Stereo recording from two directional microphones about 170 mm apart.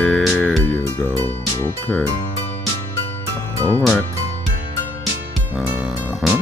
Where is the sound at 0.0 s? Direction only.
Centre (ahead or behind).